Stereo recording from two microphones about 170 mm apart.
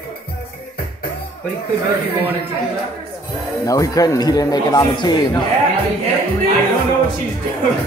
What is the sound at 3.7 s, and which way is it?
A man's voice, 20° left (ahead or behind).